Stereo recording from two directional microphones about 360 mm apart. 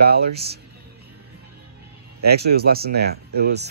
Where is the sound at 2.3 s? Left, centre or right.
Right.